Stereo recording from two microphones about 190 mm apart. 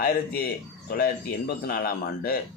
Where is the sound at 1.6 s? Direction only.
55° left (ahead or behind).